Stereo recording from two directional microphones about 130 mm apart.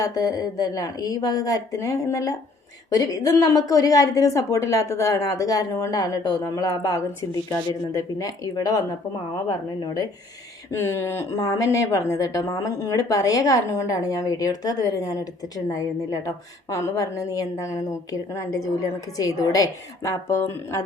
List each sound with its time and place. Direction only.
0.0 s speech: 25° left (ahead or behind)
9.8 s speech: 30° left (ahead or behind)
10.7 s speech: 20° left (ahead or behind)